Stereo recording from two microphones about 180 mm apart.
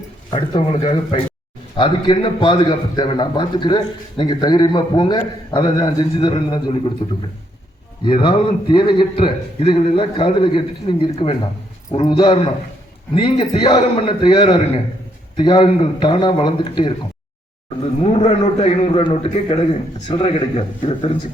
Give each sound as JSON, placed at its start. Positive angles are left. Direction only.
{"t": 0.3, "sound": "a man's voice", "side_deg": 25}
{"t": 8.0, "sound": "a man's voice", "side_deg": 25}
{"t": 18.0, "sound": "a man's voice", "side_deg": 35}